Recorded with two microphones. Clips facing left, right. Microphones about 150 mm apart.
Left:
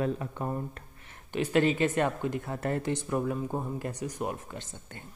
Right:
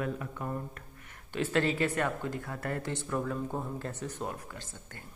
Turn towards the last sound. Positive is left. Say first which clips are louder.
# left 4 dB
turn(degrees=20)  # may be behind; listen again after turning